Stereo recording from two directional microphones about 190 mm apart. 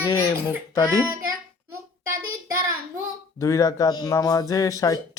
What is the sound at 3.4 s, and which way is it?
Speech, 15° left (ahead or behind).